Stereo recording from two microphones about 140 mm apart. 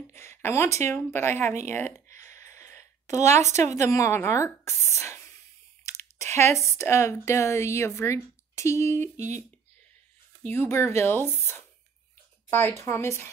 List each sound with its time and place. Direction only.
0.1 s speech: 15° left (ahead or behind)
2.1 s a sound: 20° left (ahead or behind)
3.2 s speech: 55° right (ahead or behind)
3.4 s a woman's voice: 20° left (ahead or behind)
9.1 s speech: 55° right (ahead or behind)
10.4 s speech: 15° left (ahead or behind)